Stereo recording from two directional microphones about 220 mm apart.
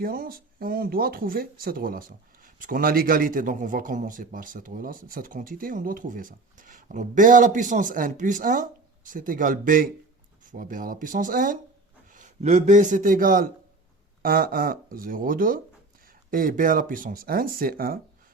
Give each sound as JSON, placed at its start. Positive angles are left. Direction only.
{"t": 0.0, "sound": "a man's voice", "side_deg": -40}